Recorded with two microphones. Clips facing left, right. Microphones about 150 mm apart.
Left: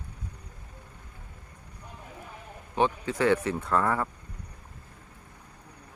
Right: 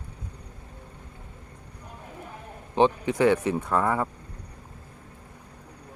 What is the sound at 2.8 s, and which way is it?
Speech, 20° right (ahead or behind).